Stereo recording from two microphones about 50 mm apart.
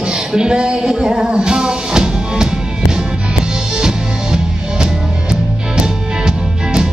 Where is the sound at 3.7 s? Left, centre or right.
Centre.